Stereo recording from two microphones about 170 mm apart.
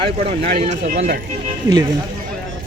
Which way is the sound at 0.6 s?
45° right (ahead or behind).